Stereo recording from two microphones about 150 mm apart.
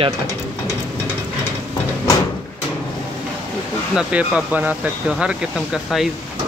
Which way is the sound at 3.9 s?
10° right (ahead or behind).